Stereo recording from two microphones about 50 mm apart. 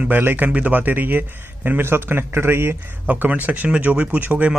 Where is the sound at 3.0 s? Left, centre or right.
Right.